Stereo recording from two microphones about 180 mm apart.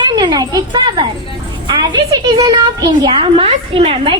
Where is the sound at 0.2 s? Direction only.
20° right (ahead or behind).